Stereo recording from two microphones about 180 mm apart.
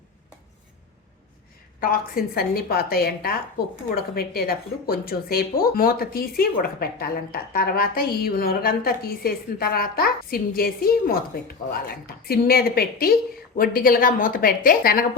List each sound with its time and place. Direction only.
1.8 s a woman's voice: 55° left (ahead or behind)